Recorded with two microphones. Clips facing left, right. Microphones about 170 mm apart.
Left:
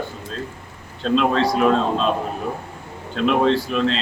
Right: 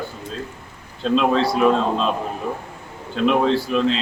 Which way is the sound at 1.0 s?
5° right (ahead or behind).